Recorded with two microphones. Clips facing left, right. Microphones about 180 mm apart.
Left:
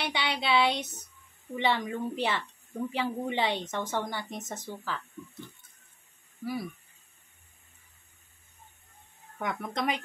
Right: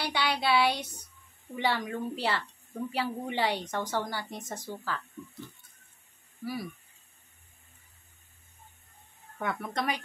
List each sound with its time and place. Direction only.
0.0 s speech: 20° left (ahead or behind)
6.4 s speech: 25° left (ahead or behind)
9.4 s speech: 15° left (ahead or behind)